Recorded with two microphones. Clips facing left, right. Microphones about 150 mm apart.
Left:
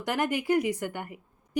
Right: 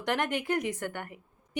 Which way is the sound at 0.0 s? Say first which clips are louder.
Left 2 dB; 5° left (ahead or behind).